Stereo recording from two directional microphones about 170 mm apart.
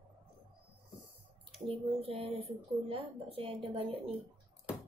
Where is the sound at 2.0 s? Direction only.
35° right (ahead or behind).